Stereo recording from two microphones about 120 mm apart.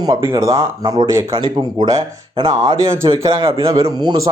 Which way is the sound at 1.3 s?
40° right (ahead or behind).